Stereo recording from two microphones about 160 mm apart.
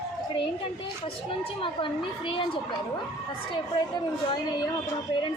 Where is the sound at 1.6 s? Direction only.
30° left (ahead or behind).